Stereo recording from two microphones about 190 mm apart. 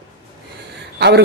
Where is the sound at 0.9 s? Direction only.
60° right (ahead or behind).